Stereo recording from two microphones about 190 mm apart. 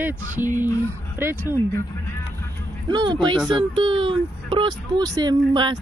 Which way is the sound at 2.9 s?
25° right (ahead or behind).